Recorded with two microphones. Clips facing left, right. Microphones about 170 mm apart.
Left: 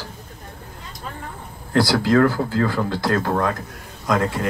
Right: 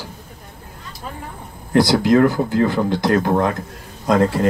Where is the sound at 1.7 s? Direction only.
20° right (ahead or behind).